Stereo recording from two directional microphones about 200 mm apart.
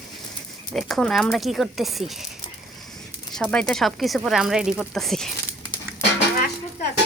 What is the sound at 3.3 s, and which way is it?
Speech, 5° left (ahead or behind).